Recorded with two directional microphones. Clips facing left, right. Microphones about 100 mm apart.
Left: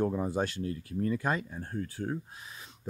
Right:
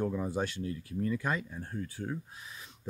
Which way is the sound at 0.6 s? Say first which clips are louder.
Left 2 dB; 45° left (ahead or behind).